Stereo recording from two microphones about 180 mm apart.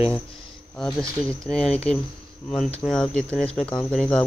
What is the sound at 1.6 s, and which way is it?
Speech, 35° left (ahead or behind).